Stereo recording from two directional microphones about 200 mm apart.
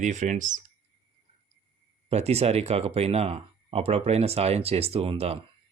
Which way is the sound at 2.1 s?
30° right (ahead or behind).